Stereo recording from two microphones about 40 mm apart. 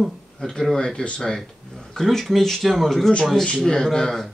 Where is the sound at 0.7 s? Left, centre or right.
Centre.